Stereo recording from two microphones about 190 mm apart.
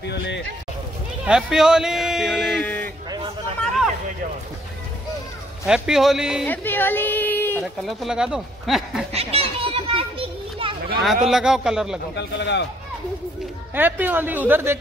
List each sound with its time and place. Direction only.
0.0 s a sound: 65° left (ahead or behind)
1.2 s a sound: 5° right (ahead or behind)
5.7 s speech: centre (ahead or behind)
6.4 s a woman's voice: 10° left (ahead or behind)
7.6 s speech: centre (ahead or behind)
9.1 s children playing: 30° right (ahead or behind)
11.0 s speech: centre (ahead or behind)
12.2 s a man's voice: 65° left (ahead or behind)
13.7 s speech: 10° right (ahead or behind)